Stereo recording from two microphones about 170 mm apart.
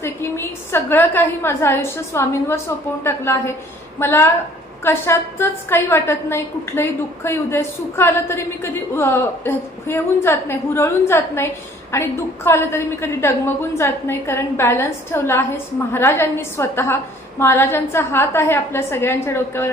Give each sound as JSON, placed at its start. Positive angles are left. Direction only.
{"t": 0.0, "sound": "a woman's voice", "side_deg": 15}